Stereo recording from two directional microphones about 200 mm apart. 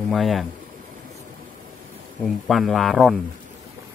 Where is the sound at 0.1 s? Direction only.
Centre (ahead or behind).